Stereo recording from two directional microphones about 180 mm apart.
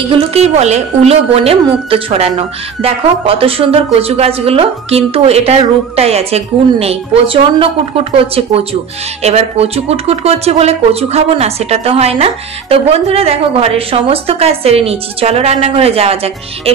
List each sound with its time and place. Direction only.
0.1 s a woman's voice: 35° right (ahead or behind)